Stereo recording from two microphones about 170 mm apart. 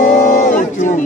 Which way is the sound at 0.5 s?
45° left (ahead or behind).